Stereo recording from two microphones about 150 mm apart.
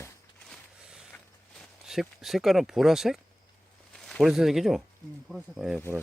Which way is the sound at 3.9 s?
5° left (ahead or behind).